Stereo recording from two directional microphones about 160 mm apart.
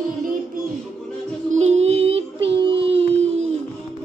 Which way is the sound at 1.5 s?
45° right (ahead or behind).